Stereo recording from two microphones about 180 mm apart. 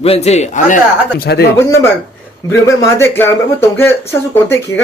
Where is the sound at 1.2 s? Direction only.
60° left (ahead or behind).